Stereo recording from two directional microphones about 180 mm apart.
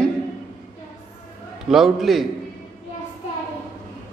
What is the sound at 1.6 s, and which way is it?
Speech, centre (ahead or behind).